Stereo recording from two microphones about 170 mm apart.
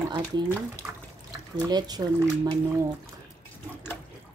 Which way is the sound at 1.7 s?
25° right (ahead or behind).